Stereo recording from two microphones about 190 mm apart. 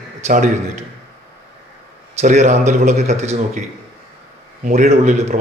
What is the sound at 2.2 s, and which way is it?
A man's voice, 40° right (ahead or behind).